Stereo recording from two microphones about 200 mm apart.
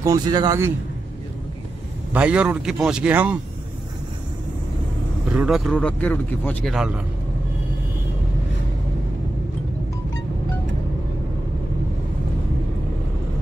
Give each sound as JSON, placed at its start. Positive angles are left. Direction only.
{"t": 0.0, "sound": "speech", "side_deg": -20}
{"t": 2.1, "sound": "speech", "side_deg": -5}
{"t": 5.3, "sound": "speech", "side_deg": -5}